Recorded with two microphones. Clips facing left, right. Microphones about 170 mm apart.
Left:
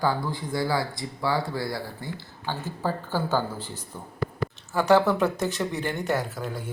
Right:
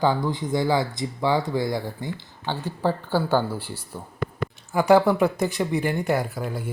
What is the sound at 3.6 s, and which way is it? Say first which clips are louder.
Speech: right 3 dB; 10° right (ahead or behind).